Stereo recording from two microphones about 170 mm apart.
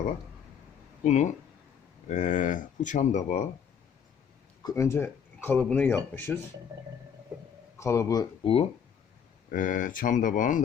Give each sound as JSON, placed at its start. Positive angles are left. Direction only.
{"t": 1.0, "sound": "speech", "side_deg": 45}
{"t": 4.6, "sound": "speech", "side_deg": 15}
{"t": 7.3, "sound": "a sound", "side_deg": -10}
{"t": 7.8, "sound": "speech", "side_deg": 15}
{"t": 9.5, "sound": "speech", "side_deg": 50}